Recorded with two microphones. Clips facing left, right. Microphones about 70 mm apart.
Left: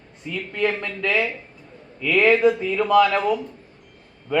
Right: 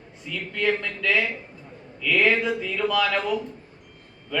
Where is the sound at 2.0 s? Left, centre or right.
Left.